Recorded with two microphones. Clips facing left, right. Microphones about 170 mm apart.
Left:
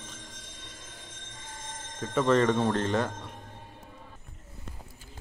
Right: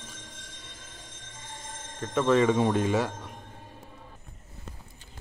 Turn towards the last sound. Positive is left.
turn(degrees=-5)  # may be behind; listen again after turning